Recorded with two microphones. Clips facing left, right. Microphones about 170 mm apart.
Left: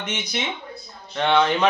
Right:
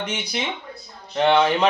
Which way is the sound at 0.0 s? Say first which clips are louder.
Right 2 dB; 30° right (ahead or behind).